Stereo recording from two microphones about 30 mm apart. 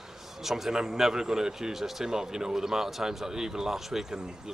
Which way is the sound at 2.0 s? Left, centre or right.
Centre.